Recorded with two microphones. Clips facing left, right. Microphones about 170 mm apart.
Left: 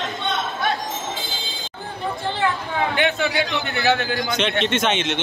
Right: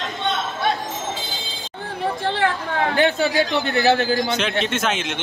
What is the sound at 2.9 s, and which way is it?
A man's voice, 35° right (ahead or behind).